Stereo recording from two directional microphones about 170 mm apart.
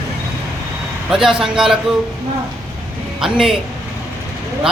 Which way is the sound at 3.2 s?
5° right (ahead or behind).